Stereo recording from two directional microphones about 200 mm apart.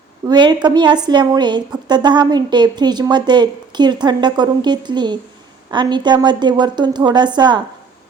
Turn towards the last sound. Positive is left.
turn(degrees=-20)  # may be behind; listen again after turning